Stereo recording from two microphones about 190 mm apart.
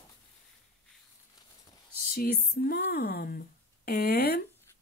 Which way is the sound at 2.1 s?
55° left (ahead or behind).